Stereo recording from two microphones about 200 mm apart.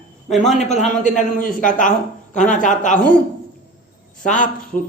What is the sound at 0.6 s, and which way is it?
A man's voice, 35° left (ahead or behind).